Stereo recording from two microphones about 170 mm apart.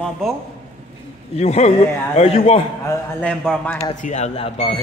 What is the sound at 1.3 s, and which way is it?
A man's voice, 40° left (ahead or behind).